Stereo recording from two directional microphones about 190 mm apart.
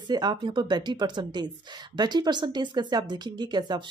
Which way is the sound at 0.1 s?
20° right (ahead or behind).